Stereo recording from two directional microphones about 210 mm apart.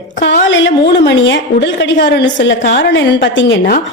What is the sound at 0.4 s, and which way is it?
A woman's voice, 60° left (ahead or behind).